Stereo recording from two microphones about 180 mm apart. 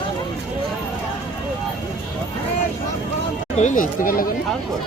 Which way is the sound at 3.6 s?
45° left (ahead or behind).